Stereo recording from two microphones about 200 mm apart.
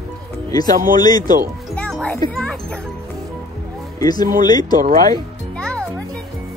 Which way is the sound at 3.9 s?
20° left (ahead or behind).